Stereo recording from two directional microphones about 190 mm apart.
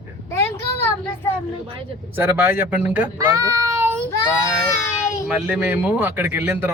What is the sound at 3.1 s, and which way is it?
Child singing, 20° right (ahead or behind).